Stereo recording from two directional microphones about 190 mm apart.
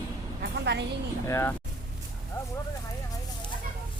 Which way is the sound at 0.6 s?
65° right (ahead or behind).